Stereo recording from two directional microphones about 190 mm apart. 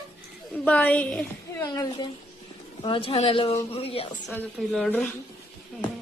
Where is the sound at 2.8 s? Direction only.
25° left (ahead or behind).